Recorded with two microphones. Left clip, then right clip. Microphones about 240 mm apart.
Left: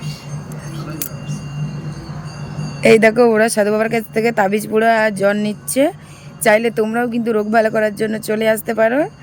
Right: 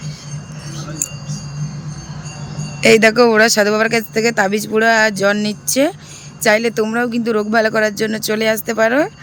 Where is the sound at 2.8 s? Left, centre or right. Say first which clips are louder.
Even; centre.